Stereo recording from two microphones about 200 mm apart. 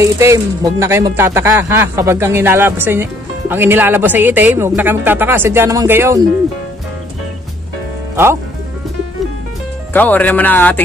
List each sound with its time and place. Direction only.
0.0 s speech: 15° right (ahead or behind)
9.9 s speech: 10° left (ahead or behind)